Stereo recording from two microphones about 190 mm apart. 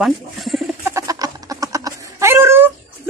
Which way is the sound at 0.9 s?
15° right (ahead or behind).